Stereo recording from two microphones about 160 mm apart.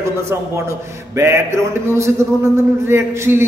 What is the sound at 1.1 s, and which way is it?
A man's voice, 15° right (ahead or behind).